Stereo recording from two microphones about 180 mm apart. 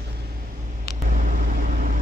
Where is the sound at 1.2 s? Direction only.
45° right (ahead or behind).